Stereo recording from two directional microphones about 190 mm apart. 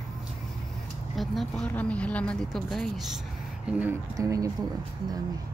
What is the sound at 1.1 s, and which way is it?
Speech, centre (ahead or behind).